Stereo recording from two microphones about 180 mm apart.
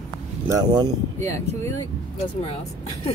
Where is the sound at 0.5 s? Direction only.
20° right (ahead or behind).